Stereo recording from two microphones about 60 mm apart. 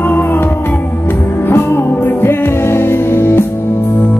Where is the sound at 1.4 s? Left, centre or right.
Left.